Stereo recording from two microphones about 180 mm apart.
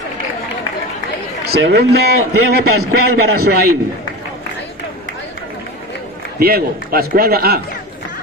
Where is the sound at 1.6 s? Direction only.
65° right (ahead or behind).